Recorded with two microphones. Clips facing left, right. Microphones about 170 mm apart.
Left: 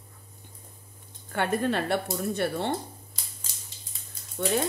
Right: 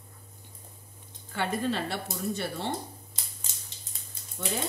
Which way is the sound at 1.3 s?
55° left (ahead or behind).